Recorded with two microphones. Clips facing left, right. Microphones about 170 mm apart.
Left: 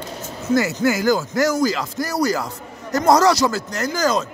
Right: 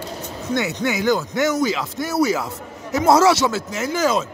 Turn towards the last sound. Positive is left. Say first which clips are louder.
# even
turn(degrees=-5)  # may be behind; listen again after turning